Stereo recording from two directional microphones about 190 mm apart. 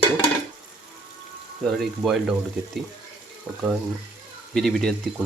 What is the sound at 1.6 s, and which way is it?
Speech, centre (ahead or behind).